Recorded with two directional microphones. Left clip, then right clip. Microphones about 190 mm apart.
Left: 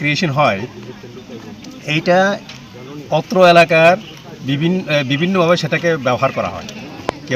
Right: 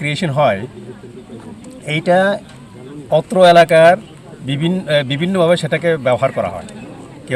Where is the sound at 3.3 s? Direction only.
5° right (ahead or behind).